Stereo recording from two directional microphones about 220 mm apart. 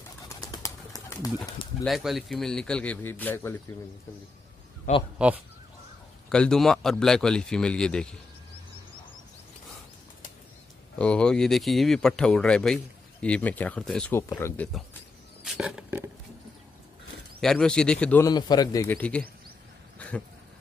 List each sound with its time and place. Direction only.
0.3 s bird: 15° left (ahead or behind)
0.9 s pigeon: 15° left (ahead or behind)
1.9 s speech: centre (ahead or behind)
4.9 s speech: 35° left (ahead or behind)
6.2 s speech: 5° left (ahead or behind)
11.0 s speech: 5° left (ahead or behind)
15.4 s roaring cats: centre (ahead or behind)
17.4 s speech: 5° left (ahead or behind)
18.3 s speech: 20° left (ahead or behind)
20.0 s a sound: 5° left (ahead or behind)